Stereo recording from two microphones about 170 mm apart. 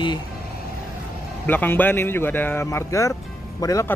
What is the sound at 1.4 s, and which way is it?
Speech, 10° left (ahead or behind).